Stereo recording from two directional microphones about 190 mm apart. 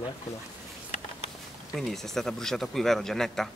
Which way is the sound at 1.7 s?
Centre (ahead or behind).